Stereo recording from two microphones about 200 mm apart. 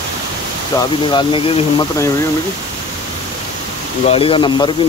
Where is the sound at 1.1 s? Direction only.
25° left (ahead or behind).